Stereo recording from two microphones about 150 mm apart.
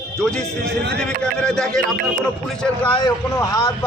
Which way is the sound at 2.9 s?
25° left (ahead or behind).